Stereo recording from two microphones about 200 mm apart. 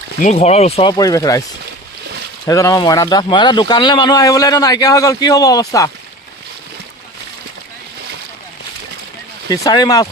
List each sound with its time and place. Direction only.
0.2 s speech: 35° left (ahead or behind); by 1.5 s 15° left (ahead or behind)
2.5 s speech: 15° left (ahead or behind)
9.5 s speech: 20° left (ahead or behind)